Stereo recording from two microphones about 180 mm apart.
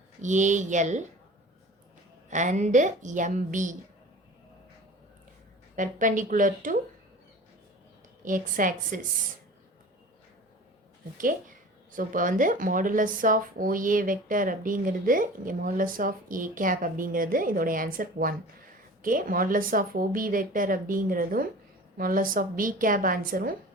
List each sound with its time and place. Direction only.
0.2 s speech: 45° right (ahead or behind)
2.3 s speech: 40° right (ahead or behind)
5.7 s speech: 45° right (ahead or behind)
8.2 s speech: 45° right (ahead or behind)
11.9 s speech: 50° right (ahead or behind)